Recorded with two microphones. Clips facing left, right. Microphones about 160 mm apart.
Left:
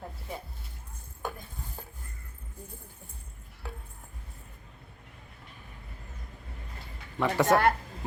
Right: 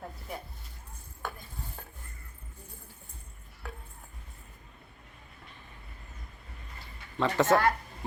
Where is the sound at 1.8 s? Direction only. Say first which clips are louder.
Left 2 dB; 5° left (ahead or behind).